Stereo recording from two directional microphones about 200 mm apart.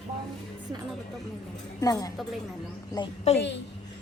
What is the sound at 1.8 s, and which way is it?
A woman's voice, 20° left (ahead or behind).